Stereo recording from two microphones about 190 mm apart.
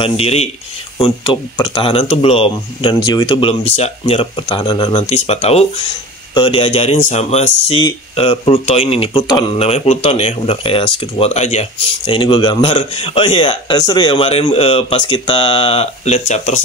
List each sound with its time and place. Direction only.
0.0 s a man's voice: 30° left (ahead or behind)